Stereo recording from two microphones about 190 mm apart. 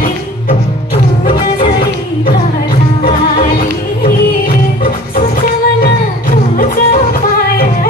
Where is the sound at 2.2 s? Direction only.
50° left (ahead or behind).